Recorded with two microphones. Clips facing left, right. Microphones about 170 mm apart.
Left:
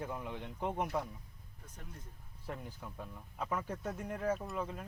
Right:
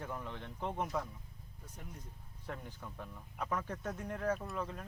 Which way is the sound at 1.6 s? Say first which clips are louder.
Right 1 dB; 10° right (ahead or behind).